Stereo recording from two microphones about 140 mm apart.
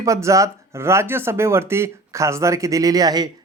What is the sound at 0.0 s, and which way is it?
Speech, 20° right (ahead or behind).